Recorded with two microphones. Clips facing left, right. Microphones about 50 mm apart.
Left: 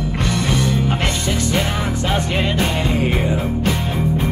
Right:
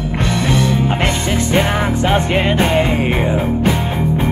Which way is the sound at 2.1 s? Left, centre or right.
Right.